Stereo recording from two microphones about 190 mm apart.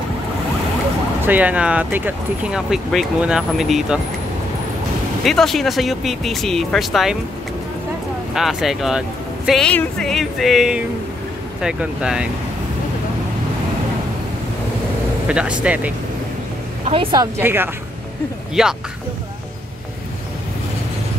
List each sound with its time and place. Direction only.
1.2 s speech: 10° right (ahead or behind)
5.2 s speech: centre (ahead or behind)
8.4 s speech: centre (ahead or behind)
15.2 s speech: 5° right (ahead or behind)
16.8 s a woman's voice: 30° right (ahead or behind)
17.2 s speech: 10° right (ahead or behind)